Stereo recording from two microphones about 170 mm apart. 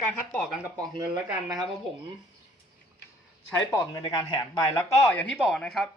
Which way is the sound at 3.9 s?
25° left (ahead or behind).